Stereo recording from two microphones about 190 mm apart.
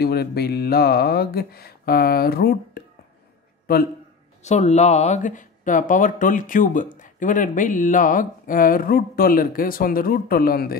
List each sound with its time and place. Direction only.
0.0 s speech: 55° left (ahead or behind)
4.4 s speech: 35° left (ahead or behind); by 10.8 s 50° left (ahead or behind)